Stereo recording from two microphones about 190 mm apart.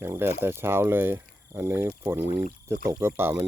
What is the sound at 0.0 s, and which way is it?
Speech, 15° right (ahead or behind).